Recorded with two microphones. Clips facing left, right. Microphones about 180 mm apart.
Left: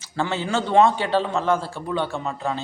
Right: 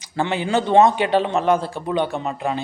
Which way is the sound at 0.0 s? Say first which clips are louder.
Right 3 dB; 15° right (ahead or behind).